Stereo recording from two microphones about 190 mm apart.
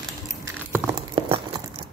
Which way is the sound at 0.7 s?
15° right (ahead or behind).